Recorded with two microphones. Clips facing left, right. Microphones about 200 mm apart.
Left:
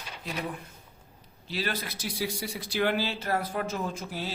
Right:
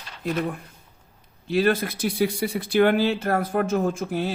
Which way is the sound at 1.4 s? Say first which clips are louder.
Right 12 dB; 55° right (ahead or behind).